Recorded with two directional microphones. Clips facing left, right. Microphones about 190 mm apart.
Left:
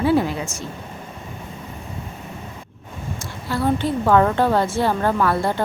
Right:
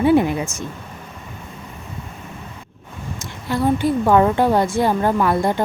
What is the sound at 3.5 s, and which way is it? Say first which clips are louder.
A woman's voice: right 3 dB; 15° right (ahead or behind).